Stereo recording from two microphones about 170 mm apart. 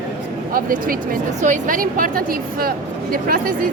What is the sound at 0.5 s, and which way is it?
A woman's voice, 55° right (ahead or behind).